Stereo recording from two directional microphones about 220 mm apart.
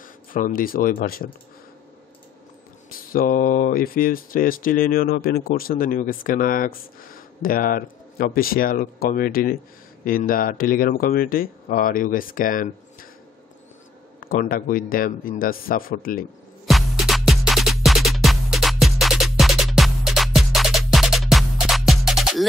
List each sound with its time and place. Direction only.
0.0 s speech: 40° left (ahead or behind)
2.9 s speech: 40° left (ahead or behind)
14.2 s speech: 40° left (ahead or behind)
16.6 s music: centre (ahead or behind)